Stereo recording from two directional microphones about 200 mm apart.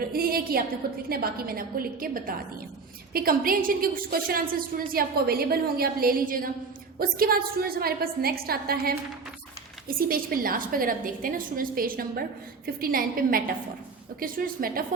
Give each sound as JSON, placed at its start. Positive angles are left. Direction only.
{"t": 0.1, "sound": "a woman's voice", "side_deg": -50}
{"t": 10.1, "sound": "a woman's voice", "side_deg": -45}